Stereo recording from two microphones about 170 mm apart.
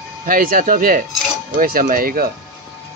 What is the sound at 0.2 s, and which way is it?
Speech, 55° right (ahead or behind).